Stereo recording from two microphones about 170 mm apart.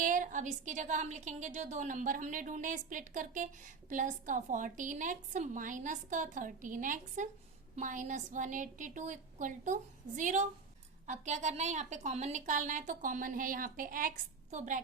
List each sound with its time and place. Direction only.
0.0 s a woman's voice: 50° right (ahead or behind)